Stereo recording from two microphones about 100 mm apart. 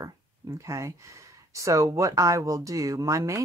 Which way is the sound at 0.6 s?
30° right (ahead or behind).